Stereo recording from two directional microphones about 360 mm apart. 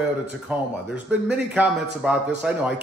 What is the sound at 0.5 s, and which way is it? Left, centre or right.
Speech, centre.